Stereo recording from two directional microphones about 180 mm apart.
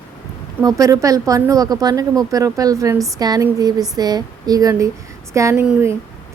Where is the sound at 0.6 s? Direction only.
20° right (ahead or behind).